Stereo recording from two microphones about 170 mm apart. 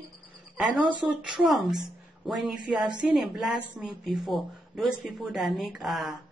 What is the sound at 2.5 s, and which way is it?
Speech, 25° right (ahead or behind).